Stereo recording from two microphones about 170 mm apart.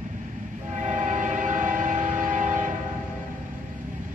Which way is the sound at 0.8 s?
45° right (ahead or behind).